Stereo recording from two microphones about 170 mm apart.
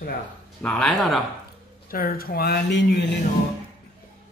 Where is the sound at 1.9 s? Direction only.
60° left (ahead or behind); by 3.0 s 90° left.